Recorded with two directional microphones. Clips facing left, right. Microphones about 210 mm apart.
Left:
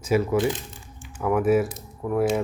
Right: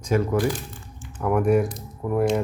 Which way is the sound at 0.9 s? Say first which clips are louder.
Right 1 dB; centre (ahead or behind).